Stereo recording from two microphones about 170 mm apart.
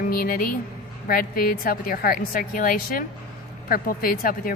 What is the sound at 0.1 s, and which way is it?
A woman's voice, 60° left (ahead or behind).